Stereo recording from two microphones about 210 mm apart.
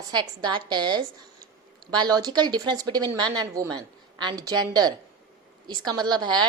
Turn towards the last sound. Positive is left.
turn(degrees=-20)  # may be behind; listen again after turning